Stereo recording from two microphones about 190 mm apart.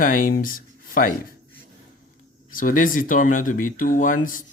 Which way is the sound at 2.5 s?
45° left (ahead or behind).